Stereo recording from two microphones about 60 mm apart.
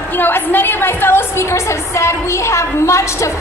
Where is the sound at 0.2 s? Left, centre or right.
Left.